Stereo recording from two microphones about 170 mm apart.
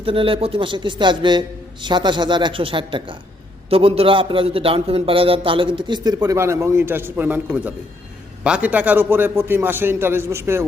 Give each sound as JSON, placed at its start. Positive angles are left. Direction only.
{"t": 0.0, "sound": "a man's voice", "side_deg": -30}